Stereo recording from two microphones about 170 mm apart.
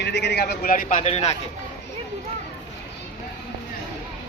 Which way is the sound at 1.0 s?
40° left (ahead or behind).